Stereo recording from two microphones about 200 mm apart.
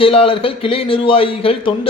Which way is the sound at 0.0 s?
30° left (ahead or behind).